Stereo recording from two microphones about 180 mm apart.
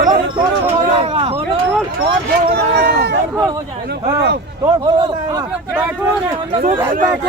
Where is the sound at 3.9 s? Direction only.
65° right (ahead or behind).